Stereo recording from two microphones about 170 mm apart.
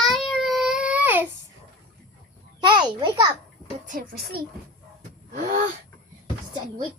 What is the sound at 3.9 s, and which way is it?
Speech, 60° right (ahead or behind).